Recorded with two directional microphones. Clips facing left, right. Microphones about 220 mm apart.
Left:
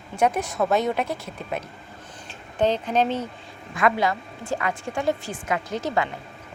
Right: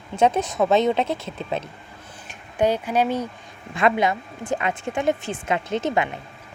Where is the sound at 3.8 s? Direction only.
20° right (ahead or behind).